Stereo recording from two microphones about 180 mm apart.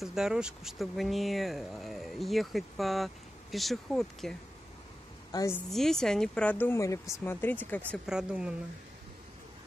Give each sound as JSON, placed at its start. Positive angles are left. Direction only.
{"t": 0.0, "sound": "speech", "side_deg": -5}
{"t": 5.3, "sound": "a woman's voice", "side_deg": 20}
{"t": 5.7, "sound": "speech", "side_deg": 0}
{"t": 8.1, "sound": "speech", "side_deg": -5}